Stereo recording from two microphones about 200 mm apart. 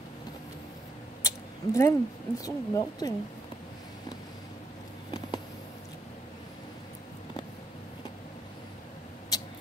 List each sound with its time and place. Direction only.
1.2 s speech: 15° left (ahead or behind)
9.3 s rodents: 20° left (ahead or behind)